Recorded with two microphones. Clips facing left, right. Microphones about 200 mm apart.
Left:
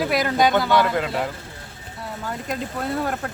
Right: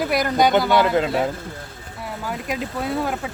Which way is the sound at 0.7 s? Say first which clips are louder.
Right 2 dB; 25° right (ahead or behind).